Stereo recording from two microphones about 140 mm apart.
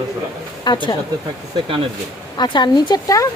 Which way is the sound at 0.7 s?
35° left (ahead or behind).